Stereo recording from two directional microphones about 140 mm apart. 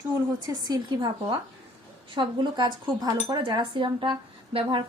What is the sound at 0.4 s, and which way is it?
A woman's voice, 30° right (ahead or behind).